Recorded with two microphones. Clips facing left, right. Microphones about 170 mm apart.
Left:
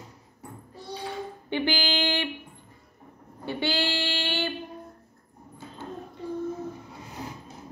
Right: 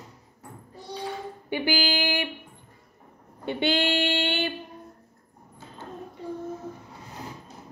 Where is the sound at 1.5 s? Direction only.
10° right (ahead or behind).